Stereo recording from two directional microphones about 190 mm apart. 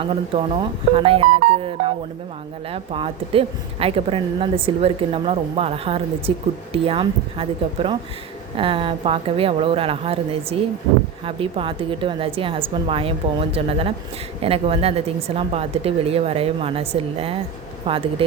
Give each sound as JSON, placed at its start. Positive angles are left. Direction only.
{"t": 0.0, "sound": "a woman's voice", "side_deg": -25}
{"t": 2.6, "sound": "a woman's voice", "side_deg": -30}